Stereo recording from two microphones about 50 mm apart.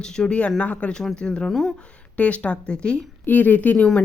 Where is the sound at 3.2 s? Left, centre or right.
Left.